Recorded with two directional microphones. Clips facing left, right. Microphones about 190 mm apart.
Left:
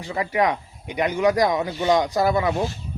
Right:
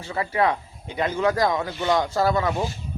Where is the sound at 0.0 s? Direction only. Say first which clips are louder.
Left 1 dB; 15° left (ahead or behind).